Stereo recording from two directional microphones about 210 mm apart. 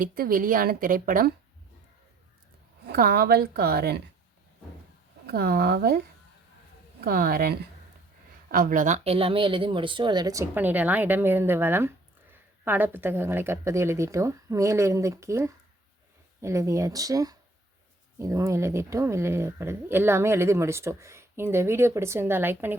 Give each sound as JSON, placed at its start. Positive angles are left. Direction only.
{"t": 0.0, "sound": "a woman's voice", "side_deg": -45}
{"t": 2.8, "sound": "a woman's voice", "side_deg": -45}
{"t": 5.2, "sound": "a woman's voice", "side_deg": -50}
{"t": 7.0, "sound": "a woman's voice", "side_deg": -45}